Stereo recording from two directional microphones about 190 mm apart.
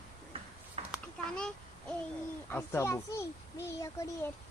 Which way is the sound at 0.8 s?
35° right (ahead or behind).